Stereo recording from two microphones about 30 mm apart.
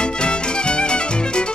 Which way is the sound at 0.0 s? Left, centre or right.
Left.